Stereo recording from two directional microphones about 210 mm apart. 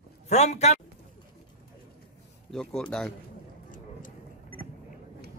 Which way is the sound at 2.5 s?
5° left (ahead or behind).